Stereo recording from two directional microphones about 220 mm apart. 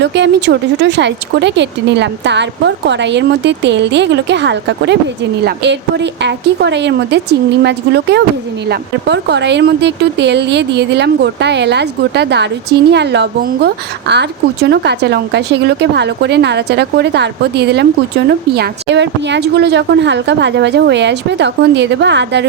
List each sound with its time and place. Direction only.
0.0 s speech: 55° right (ahead or behind)